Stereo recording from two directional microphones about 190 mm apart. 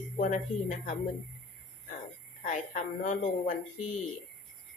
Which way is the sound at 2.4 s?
40° left (ahead or behind).